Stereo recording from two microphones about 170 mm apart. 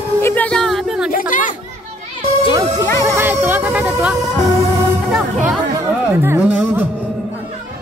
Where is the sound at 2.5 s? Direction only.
20° right (ahead or behind).